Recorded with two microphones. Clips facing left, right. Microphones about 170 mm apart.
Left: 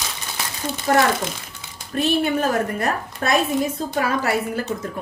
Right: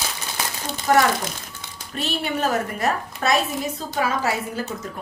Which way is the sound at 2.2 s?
50° left (ahead or behind).